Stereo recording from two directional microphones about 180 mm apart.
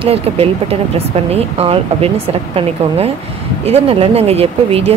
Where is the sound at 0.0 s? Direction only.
35° right (ahead or behind).